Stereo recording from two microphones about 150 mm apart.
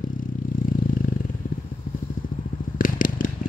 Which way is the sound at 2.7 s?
65° left (ahead or behind).